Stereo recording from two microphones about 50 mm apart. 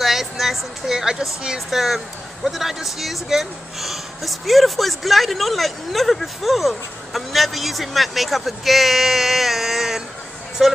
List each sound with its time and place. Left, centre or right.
0.0 s speech: centre